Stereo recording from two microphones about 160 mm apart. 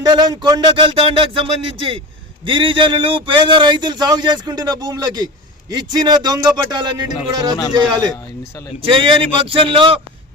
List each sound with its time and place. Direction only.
0.0 s speech: 25° right (ahead or behind)
2.5 s speech: 30° right (ahead or behind)